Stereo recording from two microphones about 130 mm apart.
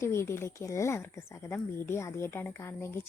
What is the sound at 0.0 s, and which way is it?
Speech, 20° left (ahead or behind).